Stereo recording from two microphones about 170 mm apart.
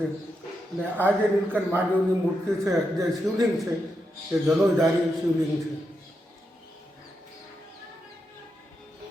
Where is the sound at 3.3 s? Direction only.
Centre (ahead or behind).